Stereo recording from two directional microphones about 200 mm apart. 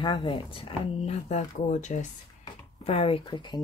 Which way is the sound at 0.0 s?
25° left (ahead or behind).